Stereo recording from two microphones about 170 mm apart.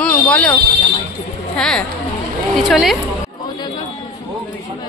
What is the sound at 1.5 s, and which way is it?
Speech, 5° left (ahead or behind).